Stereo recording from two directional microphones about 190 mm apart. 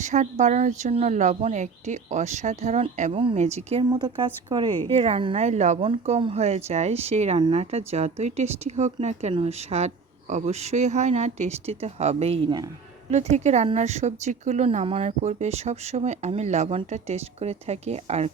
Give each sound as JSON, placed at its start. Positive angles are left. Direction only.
{"t": 0.0, "sound": "speech", "side_deg": -40}
{"t": 3.8, "sound": "speech", "side_deg": -20}